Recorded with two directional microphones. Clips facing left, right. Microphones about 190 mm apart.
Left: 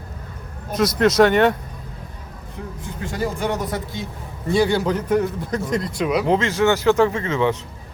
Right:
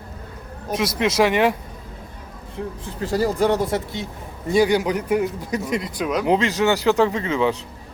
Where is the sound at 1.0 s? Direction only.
5° right (ahead or behind).